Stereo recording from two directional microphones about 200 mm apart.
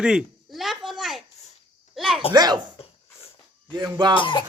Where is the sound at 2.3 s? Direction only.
20° right (ahead or behind).